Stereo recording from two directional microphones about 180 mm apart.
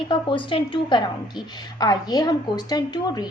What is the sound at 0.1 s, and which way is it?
A woman's voice, 30° left (ahead or behind).